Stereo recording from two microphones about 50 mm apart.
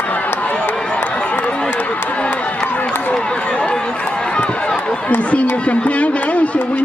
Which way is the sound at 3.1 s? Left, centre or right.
Centre.